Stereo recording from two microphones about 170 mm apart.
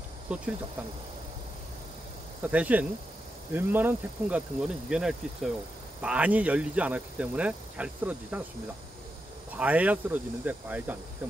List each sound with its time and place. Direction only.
0.3 s speech: 5° right (ahead or behind)
2.4 s speech: 10° right (ahead or behind)
9.6 s speech: 10° right (ahead or behind)